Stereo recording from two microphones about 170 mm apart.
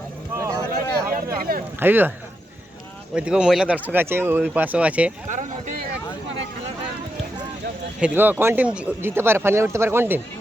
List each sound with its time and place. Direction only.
0.7 s a sound: 60° right (ahead or behind)
1.8 s speech: 10° right (ahead or behind)
3.2 s speech: 5° right (ahead or behind)
5.3 s speech: 45° right (ahead or behind)
8.0 s speech: 10° right (ahead or behind)